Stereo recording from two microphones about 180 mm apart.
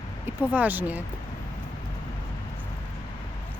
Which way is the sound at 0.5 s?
10° right (ahead or behind).